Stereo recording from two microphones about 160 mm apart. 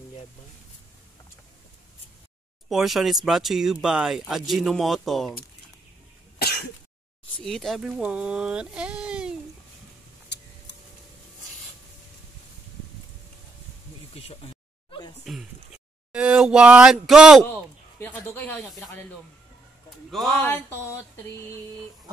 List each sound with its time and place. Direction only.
2.7 s speech: centre (ahead or behind)
7.4 s speech: centre (ahead or behind)
14.1 s a sound: 35° left (ahead or behind)
15.2 s speech: 5° right (ahead or behind)
17.5 s speech: 15° left (ahead or behind)
20.1 s speech: centre (ahead or behind)
20.4 s a sound: 15° left (ahead or behind)